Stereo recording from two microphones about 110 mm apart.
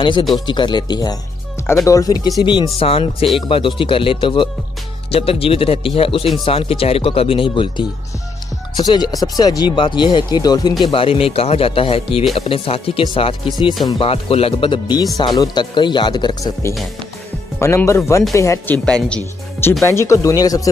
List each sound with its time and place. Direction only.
0.5 s speech: 45° left (ahead or behind)
2.8 s speech: 60° left (ahead or behind)
8.7 s speech: 40° left (ahead or behind)
10.9 s speech: 55° left (ahead or behind)
14.0 s speech: 60° left (ahead or behind); by 16.5 s 45° left (ahead or behind)
17.6 s speech: 25° left (ahead or behind)
18.9 s speech: 10° left (ahead or behind)
19.8 s speech: 25° left (ahead or behind)